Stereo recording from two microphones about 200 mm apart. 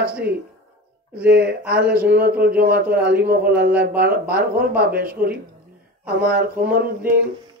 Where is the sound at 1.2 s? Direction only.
55° right (ahead or behind).